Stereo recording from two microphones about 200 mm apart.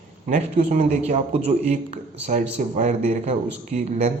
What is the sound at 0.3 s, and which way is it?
A man's voice, 40° right (ahead or behind).